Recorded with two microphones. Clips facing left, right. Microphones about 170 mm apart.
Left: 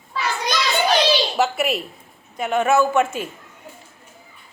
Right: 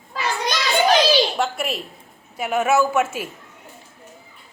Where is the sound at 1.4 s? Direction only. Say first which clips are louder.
Left 4 dB; centre (ahead or behind).